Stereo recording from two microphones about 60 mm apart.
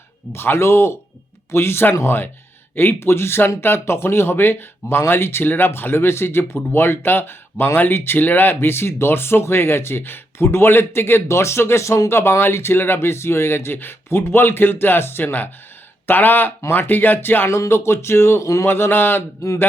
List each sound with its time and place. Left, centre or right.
0.3 s speech: left
17.5 s speech: left
19.4 s speech: left